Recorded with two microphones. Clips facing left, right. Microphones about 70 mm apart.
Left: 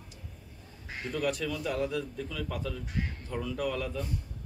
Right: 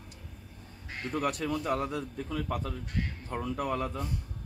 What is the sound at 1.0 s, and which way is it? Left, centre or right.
Speech, right.